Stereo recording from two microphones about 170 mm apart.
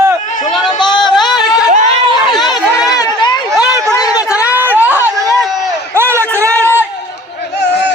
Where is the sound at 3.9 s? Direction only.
20° left (ahead or behind).